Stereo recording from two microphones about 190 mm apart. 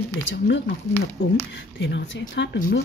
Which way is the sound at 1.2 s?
85° left.